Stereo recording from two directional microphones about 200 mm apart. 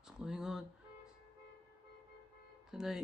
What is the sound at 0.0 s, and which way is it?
Music, 5° right (ahead or behind).